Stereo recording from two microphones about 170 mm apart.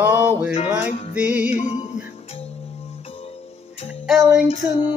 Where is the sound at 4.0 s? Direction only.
5° right (ahead or behind).